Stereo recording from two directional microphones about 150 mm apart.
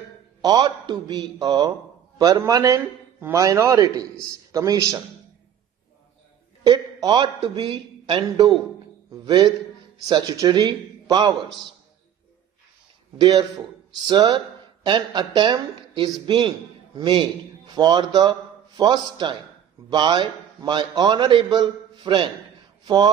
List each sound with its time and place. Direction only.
0.4 s a man's voice: 30° right (ahead or behind)
6.6 s a man's voice: 25° right (ahead or behind)
14.0 s speech: 30° right (ahead or behind)